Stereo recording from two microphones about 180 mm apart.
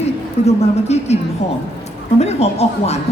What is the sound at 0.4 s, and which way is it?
Speech, 35° left (ahead or behind).